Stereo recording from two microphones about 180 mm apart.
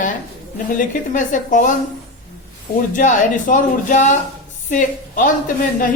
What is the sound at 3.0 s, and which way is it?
A woman's voice, 45° left (ahead or behind).